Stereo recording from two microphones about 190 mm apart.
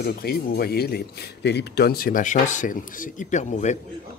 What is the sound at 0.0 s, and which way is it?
A man's voice, 55° left (ahead or behind).